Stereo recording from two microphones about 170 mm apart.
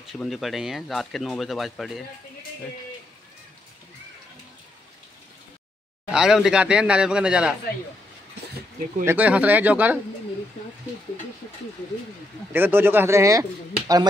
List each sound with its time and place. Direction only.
0.0 s speech: centre (ahead or behind)
6.0 s speech: 5° right (ahead or behind)
9.0 s speech: 10° right (ahead or behind)
12.5 s speech: 10° right (ahead or behind)